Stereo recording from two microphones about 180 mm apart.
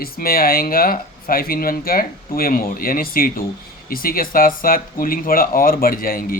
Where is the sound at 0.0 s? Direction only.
55° left (ahead or behind).